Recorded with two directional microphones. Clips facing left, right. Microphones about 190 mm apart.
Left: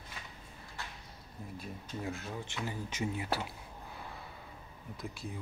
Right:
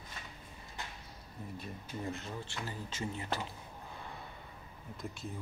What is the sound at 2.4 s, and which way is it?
Speech, 15° left (ahead or behind).